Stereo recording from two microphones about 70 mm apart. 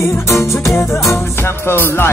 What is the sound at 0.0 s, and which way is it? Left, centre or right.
Music, left.